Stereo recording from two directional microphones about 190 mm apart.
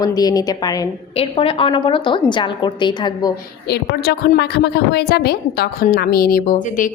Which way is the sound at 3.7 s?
60° left (ahead or behind).